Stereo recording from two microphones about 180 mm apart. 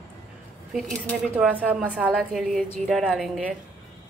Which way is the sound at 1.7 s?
5° right (ahead or behind).